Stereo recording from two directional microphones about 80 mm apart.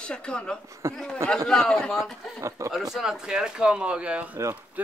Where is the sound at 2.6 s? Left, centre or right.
Right.